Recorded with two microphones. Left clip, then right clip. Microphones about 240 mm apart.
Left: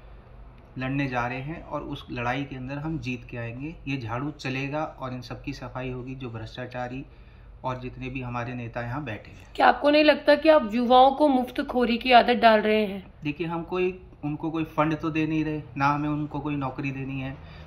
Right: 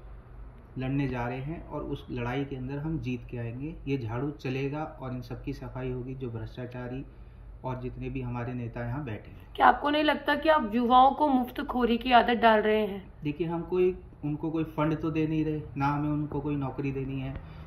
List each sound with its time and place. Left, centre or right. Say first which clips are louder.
0.7 s speech: left 4 dB; centre
9.6 s speech: left 4 dB; left
13.2 s speech: left 2 dB; centre